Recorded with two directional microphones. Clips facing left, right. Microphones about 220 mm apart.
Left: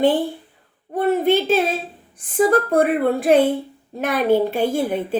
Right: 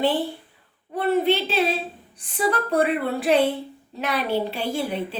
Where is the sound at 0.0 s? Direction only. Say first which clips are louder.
Left 5 dB; 50° left (ahead or behind).